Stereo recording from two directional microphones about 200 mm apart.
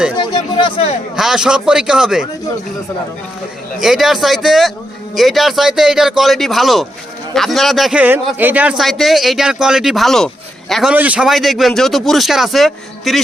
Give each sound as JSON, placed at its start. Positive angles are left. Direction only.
{"t": 0.2, "sound": "a sound", "side_deg": 25}
{"t": 1.1, "sound": "speech", "side_deg": -5}
{"t": 3.8, "sound": "speech", "side_deg": 0}